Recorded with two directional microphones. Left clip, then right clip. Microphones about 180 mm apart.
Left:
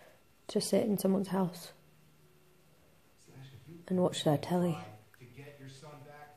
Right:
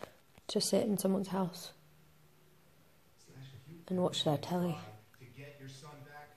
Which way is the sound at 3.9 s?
20° left (ahead or behind).